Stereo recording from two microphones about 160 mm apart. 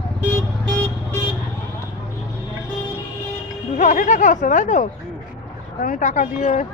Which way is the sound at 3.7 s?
50° left (ahead or behind).